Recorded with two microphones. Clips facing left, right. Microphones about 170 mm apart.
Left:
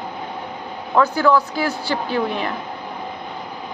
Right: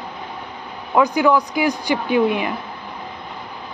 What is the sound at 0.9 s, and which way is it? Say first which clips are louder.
Speech: right 1 dB; 15° right (ahead or behind).